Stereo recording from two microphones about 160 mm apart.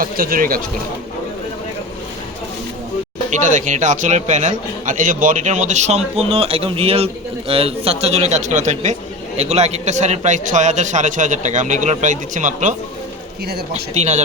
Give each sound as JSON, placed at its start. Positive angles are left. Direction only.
{"t": 0.0, "sound": "speech", "side_deg": -65}
{"t": 3.4, "sound": "a man's voice", "side_deg": -50}
{"t": 13.9, "sound": "a man's voice", "side_deg": -45}